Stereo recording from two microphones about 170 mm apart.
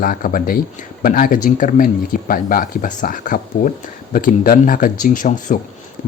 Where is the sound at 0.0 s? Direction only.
55° left (ahead or behind).